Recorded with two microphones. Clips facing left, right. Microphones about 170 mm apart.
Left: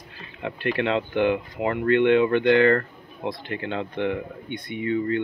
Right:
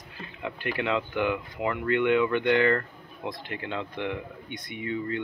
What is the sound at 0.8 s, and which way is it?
Speech, 30° left (ahead or behind).